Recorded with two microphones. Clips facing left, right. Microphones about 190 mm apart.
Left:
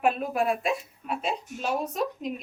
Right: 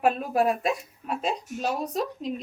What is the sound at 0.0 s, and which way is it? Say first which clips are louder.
A woman's voice: right 2 dB; 40° right (ahead or behind).